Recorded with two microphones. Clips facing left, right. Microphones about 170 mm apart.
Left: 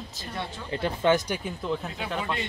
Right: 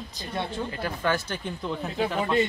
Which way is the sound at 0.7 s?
25° left (ahead or behind).